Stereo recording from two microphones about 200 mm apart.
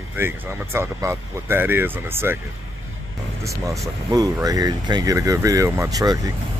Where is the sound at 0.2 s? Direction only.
10° right (ahead or behind).